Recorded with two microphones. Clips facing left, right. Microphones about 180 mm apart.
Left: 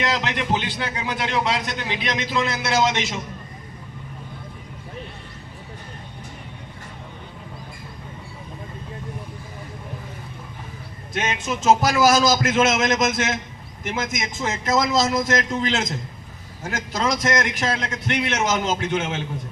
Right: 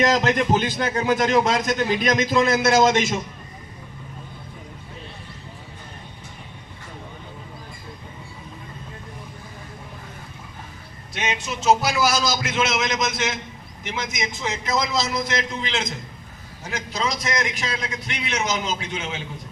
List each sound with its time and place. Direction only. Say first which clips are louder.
0.0 s a man's voice: right 6 dB; 45° right (ahead or behind)
11.1 s a man's voice: left 2 dB; 50° left (ahead or behind)